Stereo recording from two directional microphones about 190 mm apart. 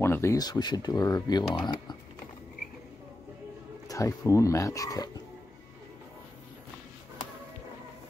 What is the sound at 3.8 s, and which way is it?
Speech, 15° left (ahead or behind).